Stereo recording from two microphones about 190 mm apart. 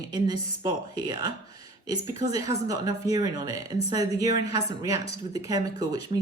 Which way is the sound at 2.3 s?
15° right (ahead or behind).